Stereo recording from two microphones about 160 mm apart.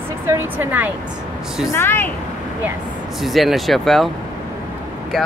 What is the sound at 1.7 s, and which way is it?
Speech, 15° left (ahead or behind).